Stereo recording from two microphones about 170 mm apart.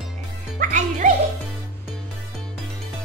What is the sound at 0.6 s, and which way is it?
Music, 45° right (ahead or behind).